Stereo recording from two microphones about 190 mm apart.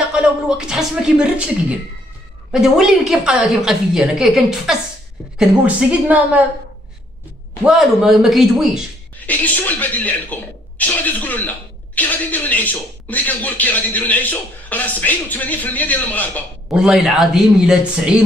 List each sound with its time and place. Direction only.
0.1 s a woman's voice: 5° right (ahead or behind)
7.6 s a woman's voice: centre (ahead or behind)
16.6 s a woman's voice: 5° right (ahead or behind)